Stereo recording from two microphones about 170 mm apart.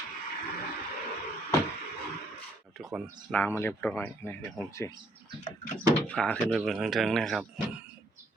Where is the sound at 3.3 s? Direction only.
10° left (ahead or behind).